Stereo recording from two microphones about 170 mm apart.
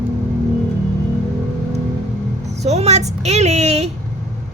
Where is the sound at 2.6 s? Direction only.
40° right (ahead or behind).